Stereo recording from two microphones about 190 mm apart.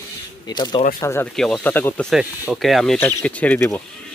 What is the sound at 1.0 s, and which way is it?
Speech, 10° left (ahead or behind).